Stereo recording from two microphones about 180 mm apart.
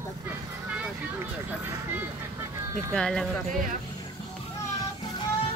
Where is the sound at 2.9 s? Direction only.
5° left (ahead or behind).